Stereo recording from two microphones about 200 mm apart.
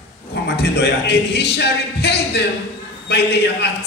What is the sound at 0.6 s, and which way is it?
A man's voice, 55° left (ahead or behind).